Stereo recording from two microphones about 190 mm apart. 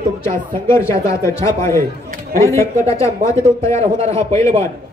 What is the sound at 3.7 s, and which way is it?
Speech, 30° right (ahead or behind).